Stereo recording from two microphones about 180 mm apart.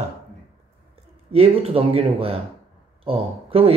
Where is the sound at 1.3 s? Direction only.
35° right (ahead or behind).